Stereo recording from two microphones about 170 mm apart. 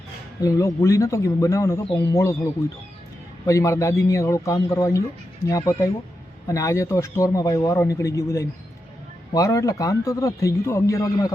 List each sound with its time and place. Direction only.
0.4 s speech: 15° left (ahead or behind)